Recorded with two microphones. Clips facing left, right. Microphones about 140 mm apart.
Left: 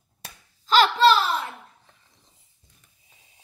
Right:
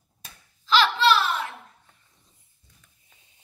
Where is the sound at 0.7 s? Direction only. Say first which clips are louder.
Left 3 dB; 40° left (ahead or behind).